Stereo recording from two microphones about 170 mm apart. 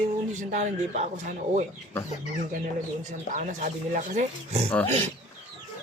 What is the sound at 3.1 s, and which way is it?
Speech, 45° right (ahead or behind).